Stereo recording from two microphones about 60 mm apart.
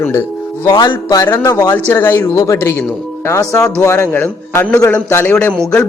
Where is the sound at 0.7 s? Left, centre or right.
Left.